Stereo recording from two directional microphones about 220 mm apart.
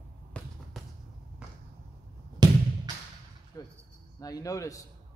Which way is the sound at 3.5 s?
15° left (ahead or behind).